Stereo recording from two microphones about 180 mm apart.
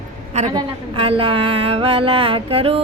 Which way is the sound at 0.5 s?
30° right (ahead or behind).